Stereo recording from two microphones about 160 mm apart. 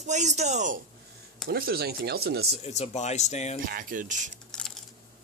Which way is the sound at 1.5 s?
75° right (ahead or behind).